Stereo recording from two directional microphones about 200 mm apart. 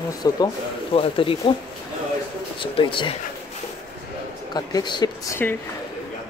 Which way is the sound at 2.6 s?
25° left (ahead or behind).